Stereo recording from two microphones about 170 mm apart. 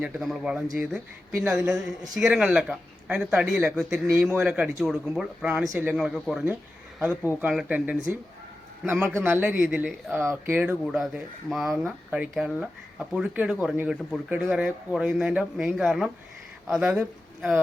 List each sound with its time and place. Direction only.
0.0 s speech: 5° right (ahead or behind)
4.0 s a man's voice: 15° right (ahead or behind)
5.6 s a man's voice: 20° right (ahead or behind)
5.9 s a man's voice: 5° right (ahead or behind)